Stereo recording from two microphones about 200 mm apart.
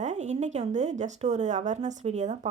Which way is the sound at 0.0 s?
35° right (ahead or behind).